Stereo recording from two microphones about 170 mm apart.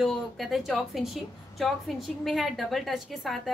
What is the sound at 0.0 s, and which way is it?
A woman's voice, centre (ahead or behind).